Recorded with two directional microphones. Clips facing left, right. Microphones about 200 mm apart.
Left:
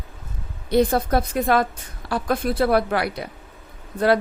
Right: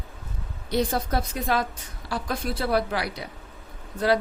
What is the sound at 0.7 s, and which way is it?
A woman's voice, 55° left (ahead or behind).